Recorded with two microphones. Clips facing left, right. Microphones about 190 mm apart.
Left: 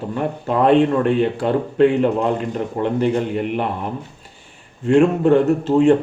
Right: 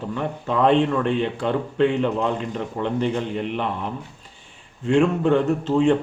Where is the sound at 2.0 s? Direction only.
45° left (ahead or behind).